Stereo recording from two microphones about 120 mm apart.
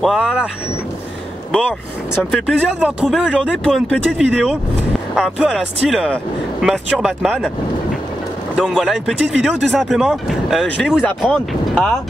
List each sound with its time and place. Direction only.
0.0 s speech: 5° right (ahead or behind)
2.3 s speech: 5° right (ahead or behind)
8.5 s speech: 5° right (ahead or behind)